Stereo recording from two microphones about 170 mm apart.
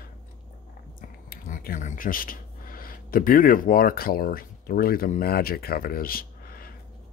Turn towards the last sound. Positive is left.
turn(degrees=60)  # may be behind; listen again after turning